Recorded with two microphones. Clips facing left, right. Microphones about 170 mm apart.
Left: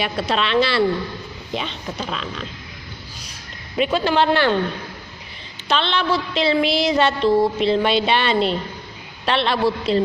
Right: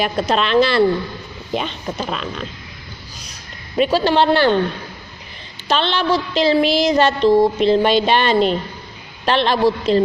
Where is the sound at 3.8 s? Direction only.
35° right (ahead or behind).